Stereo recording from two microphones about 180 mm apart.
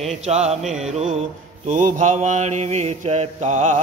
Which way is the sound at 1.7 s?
45° right (ahead or behind).